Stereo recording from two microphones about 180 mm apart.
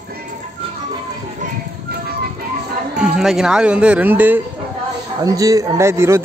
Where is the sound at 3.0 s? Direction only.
5° right (ahead or behind).